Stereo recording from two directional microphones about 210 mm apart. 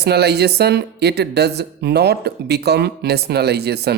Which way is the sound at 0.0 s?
50° right (ahead or behind).